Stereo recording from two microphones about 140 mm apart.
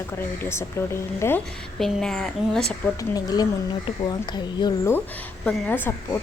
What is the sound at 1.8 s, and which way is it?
Speech, 5° left (ahead or behind).